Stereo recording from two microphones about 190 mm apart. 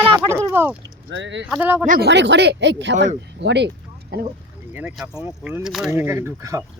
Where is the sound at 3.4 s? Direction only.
65° right (ahead or behind).